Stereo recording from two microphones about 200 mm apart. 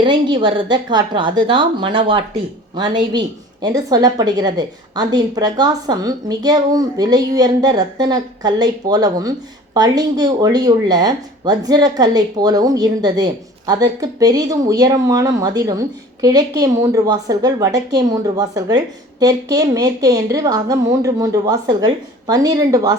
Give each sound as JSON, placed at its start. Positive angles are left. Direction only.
{"t": 0.0, "sound": "a woman's voice", "side_deg": -25}